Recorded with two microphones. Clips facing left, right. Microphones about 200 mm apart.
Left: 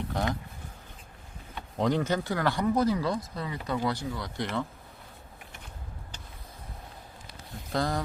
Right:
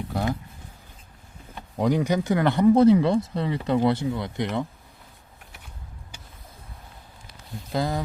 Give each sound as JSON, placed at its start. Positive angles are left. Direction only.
{"t": 0.1, "sound": "speech", "side_deg": -10}
{"t": 1.8, "sound": "speech", "side_deg": -10}
{"t": 7.7, "sound": "speech", "side_deg": 0}